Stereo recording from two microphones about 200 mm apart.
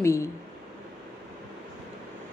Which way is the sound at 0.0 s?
15° left (ahead or behind).